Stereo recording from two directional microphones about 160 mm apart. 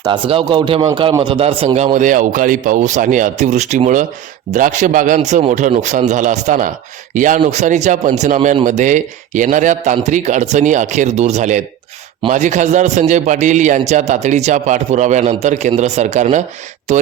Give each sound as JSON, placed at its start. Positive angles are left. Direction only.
{"t": 0.0, "sound": "a man's voice", "side_deg": -30}